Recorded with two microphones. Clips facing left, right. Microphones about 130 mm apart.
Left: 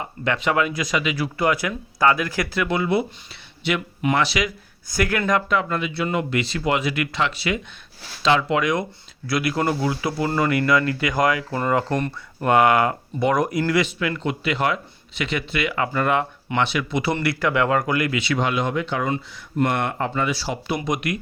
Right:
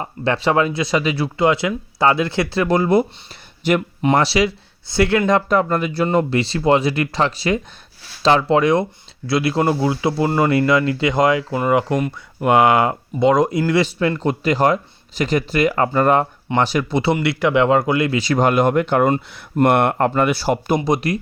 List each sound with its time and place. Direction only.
0.0 s speech: 30° right (ahead or behind)
4.0 s speech: 35° right (ahead or behind)
5.5 s speech: 40° right (ahead or behind); by 12.5 s 10° right (ahead or behind)
12.5 s speech: 25° right (ahead or behind)
18.2 s speech: 40° right (ahead or behind)
20.8 s speech: 35° right (ahead or behind)